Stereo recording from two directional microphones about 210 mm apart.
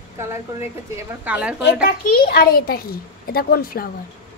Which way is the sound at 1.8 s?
45° left (ahead or behind).